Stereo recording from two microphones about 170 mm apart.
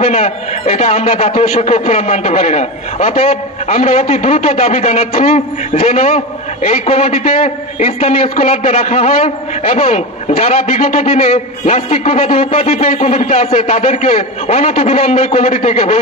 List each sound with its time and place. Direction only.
0.0 s a man's voice: 40° left (ahead or behind)